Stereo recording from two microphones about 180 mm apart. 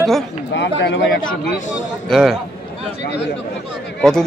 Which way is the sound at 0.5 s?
80° left.